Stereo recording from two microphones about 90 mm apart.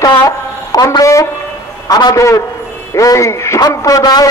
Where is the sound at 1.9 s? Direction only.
45° left (ahead or behind).